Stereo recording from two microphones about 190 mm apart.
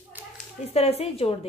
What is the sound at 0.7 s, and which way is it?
Speech, 35° left (ahead or behind).